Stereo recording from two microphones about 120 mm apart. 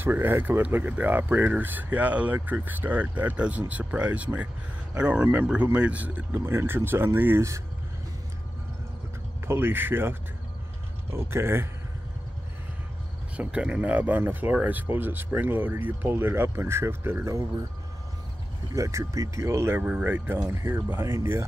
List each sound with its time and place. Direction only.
0.0 s speech: 20° right (ahead or behind)
9.5 s speech: 15° right (ahead or behind)
13.4 s speech: 10° right (ahead or behind)
18.8 s speech: 25° right (ahead or behind)